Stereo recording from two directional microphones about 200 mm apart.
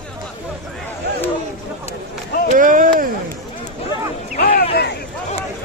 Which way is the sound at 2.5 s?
40° right (ahead or behind).